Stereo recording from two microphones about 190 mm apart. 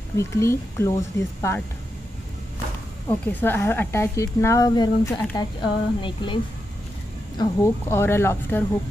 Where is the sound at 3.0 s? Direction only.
10° left (ahead or behind).